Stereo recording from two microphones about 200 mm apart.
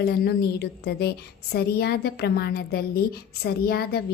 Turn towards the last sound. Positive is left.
turn(degrees=50)  # may be behind; listen again after turning